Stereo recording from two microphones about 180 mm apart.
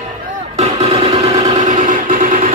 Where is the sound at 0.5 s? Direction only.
35° right (ahead or behind).